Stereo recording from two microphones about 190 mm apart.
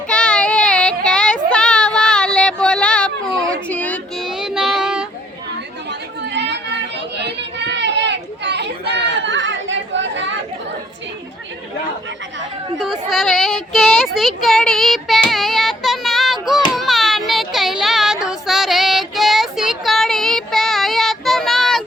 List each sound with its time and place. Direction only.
0.1 s child singing: 5° left (ahead or behind)
5.9 s chatter: 65° right (ahead or behind)
12.8 s child singing: centre (ahead or behind)
16.7 s a sound: centre (ahead or behind)